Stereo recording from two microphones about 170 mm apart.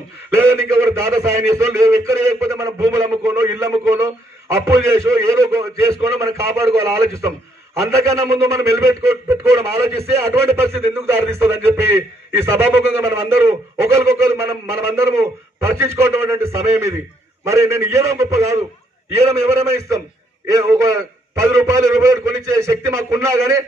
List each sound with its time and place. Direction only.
0.4 s a man's voice: 15° right (ahead or behind)